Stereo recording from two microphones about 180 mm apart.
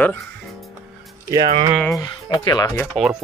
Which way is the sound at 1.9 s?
25° left (ahead or behind).